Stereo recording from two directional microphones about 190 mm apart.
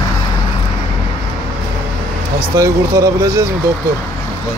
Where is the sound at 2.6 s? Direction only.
20° right (ahead or behind).